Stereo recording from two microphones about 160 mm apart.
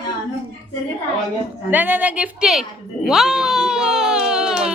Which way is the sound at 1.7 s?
10° right (ahead or behind).